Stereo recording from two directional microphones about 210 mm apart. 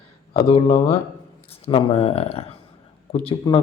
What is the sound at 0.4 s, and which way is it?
Speech, 30° left (ahead or behind).